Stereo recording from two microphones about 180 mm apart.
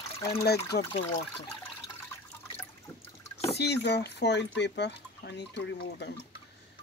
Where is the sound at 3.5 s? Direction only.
70° left (ahead or behind).